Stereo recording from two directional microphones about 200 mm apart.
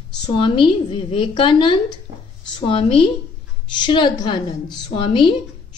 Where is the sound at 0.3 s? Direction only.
25° left (ahead or behind).